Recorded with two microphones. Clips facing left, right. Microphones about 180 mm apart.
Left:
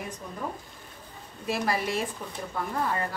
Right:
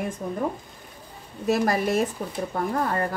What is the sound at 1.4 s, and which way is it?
Speech, 45° right (ahead or behind).